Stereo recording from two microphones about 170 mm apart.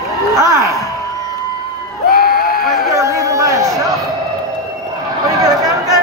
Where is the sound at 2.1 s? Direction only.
60° left (ahead or behind).